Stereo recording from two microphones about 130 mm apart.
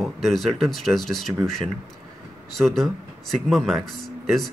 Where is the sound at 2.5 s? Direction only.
5° left (ahead or behind).